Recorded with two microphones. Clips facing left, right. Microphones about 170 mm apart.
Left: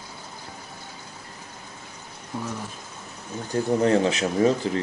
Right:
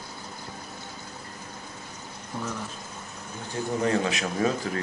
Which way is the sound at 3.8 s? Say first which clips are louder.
Left 4 dB; 30° left (ahead or behind).